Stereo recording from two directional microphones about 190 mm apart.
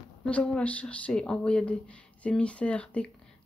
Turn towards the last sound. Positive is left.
turn(degrees=5)  # may be behind; listen again after turning